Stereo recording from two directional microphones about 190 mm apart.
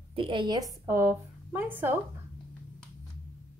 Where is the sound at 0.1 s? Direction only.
25° right (ahead or behind).